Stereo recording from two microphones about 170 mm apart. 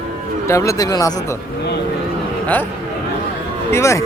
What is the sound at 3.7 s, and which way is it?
Speech, 15° left (ahead or behind).